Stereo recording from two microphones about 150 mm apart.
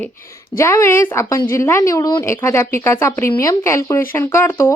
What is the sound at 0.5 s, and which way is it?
A woman's voice, 20° left (ahead or behind).